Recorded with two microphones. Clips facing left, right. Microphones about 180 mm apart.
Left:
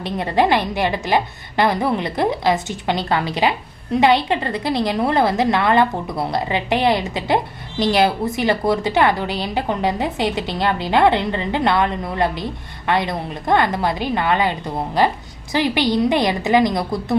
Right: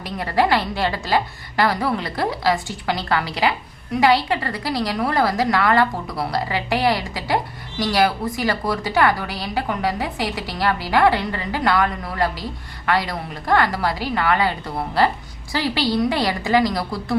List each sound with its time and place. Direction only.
0.0 s a woman's voice: 20° left (ahead or behind)